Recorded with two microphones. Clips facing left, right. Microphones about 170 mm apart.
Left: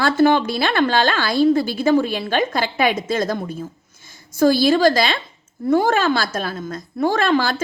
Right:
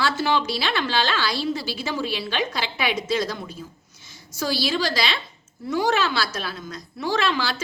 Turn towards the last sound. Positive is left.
turn(degrees=50)  # may be behind; listen again after turning